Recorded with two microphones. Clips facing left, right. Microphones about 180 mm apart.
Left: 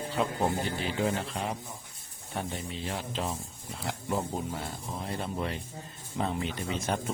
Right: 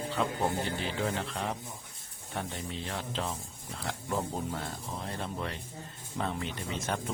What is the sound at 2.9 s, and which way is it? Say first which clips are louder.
Speech: left 3 dB; 15° left (ahead or behind).